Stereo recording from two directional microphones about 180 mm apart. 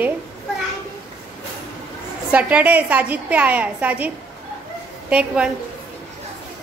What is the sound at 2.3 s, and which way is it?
A woman's voice, 10° right (ahead or behind).